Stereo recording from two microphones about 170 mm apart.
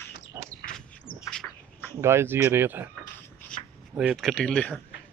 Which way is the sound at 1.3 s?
5° left (ahead or behind).